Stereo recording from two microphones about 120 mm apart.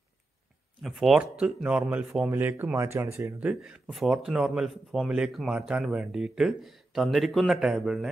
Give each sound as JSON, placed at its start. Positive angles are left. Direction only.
{"t": 0.8, "sound": "speech", "side_deg": 0}
{"t": 2.3, "sound": "speech", "side_deg": -20}
{"t": 3.3, "sound": "speech", "side_deg": -10}